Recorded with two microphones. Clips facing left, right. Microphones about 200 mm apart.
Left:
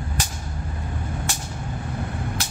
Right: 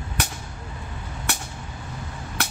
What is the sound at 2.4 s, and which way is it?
Vehicle, 60° right (ahead or behind).